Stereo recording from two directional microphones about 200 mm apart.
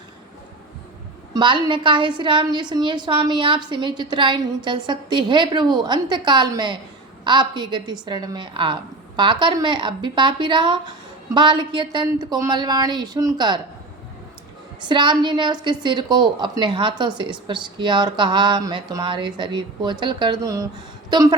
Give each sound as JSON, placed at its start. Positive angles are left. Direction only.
{"t": 1.3, "sound": "a woman's voice", "side_deg": -25}
{"t": 14.8, "sound": "a woman's voice", "side_deg": -20}